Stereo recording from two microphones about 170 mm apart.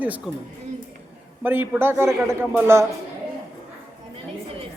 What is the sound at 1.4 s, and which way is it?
A man's voice, 10° right (ahead or behind).